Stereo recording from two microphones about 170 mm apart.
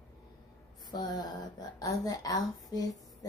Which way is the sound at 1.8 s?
20° left (ahead or behind).